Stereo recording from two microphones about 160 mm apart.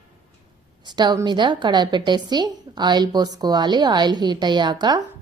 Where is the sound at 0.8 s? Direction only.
25° right (ahead or behind).